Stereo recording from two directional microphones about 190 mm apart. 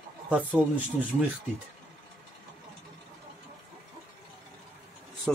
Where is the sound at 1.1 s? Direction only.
35° right (ahead or behind).